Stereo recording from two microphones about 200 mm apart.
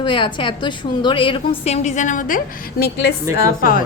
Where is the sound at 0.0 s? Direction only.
25° left (ahead or behind).